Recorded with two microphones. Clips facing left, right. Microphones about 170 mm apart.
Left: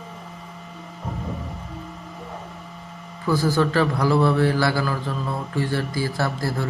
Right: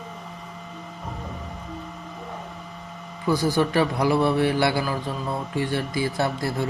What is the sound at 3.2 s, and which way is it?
A man's voice, 20° right (ahead or behind).